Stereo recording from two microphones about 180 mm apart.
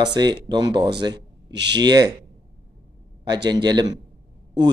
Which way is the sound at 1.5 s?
75° right (ahead or behind).